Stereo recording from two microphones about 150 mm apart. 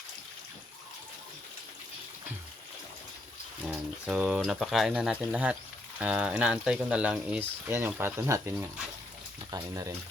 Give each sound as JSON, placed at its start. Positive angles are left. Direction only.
{"t": 3.7, "sound": "speech", "side_deg": -5}